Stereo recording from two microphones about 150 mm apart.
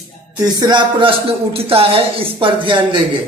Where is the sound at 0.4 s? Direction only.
25° right (ahead or behind).